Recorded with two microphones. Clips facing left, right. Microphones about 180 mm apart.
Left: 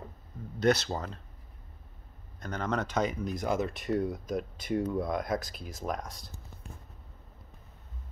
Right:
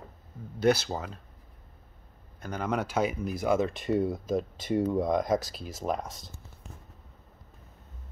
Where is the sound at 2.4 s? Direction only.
10° right (ahead or behind).